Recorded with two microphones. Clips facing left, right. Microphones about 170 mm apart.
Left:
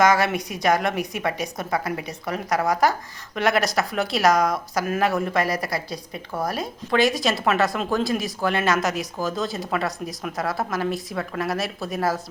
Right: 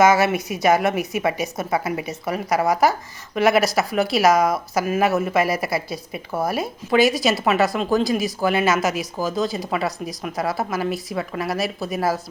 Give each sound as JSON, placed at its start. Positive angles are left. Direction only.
{"t": 0.0, "sound": "speech", "side_deg": -5}